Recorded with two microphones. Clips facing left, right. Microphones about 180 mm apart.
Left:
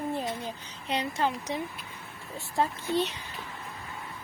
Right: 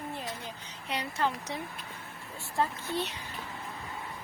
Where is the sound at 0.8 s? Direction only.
25° left (ahead or behind).